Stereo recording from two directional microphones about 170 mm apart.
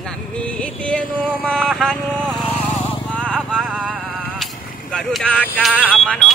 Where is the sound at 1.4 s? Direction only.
5° left (ahead or behind).